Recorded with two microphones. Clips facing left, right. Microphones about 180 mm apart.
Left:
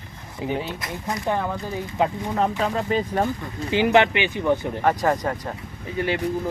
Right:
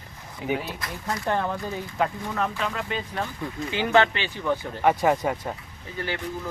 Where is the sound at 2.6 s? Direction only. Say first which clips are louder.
Left 7 dB; 35° left (ahead or behind).